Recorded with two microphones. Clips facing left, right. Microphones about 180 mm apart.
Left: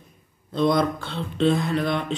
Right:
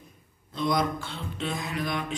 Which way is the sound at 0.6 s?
60° left (ahead or behind).